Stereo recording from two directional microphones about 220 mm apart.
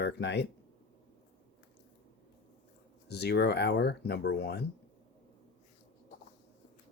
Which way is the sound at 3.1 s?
50° left (ahead or behind).